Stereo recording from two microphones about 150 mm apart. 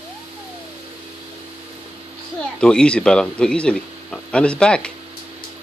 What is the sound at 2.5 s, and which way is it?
Speech, 5° left (ahead or behind).